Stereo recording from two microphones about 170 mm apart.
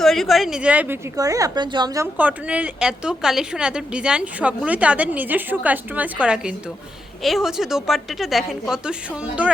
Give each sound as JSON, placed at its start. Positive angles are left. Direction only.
{"t": 0.0, "sound": "a woman's voice", "side_deg": 0}
{"t": 1.1, "sound": "speech", "side_deg": -20}
{"t": 2.1, "sound": "a woman's voice", "side_deg": -10}